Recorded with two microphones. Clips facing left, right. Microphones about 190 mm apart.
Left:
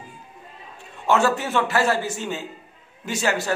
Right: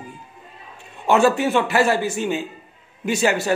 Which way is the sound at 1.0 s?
15° right (ahead or behind).